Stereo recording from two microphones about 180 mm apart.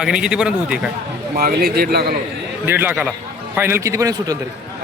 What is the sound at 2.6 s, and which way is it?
A man's voice, 10° right (ahead or behind).